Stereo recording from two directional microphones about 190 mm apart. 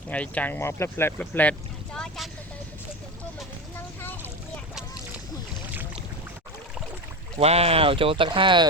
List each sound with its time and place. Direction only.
0.1 s speech: 5° left (ahead or behind)
3.8 s boat: 10° left (ahead or behind)
7.3 s speech: 30° right (ahead or behind)